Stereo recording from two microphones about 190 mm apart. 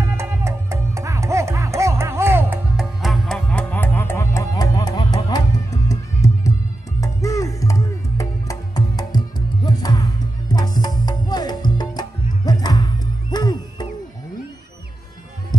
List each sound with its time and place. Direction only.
0.0 s music: 15° right (ahead or behind); by 13.8 s 20° left (ahead or behind)